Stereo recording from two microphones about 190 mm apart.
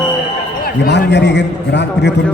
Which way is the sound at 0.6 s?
60° left (ahead or behind).